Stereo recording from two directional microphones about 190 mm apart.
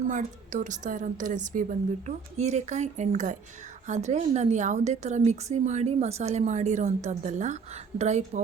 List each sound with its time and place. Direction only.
0.1 s a woman's voice: 40° right (ahead or behind)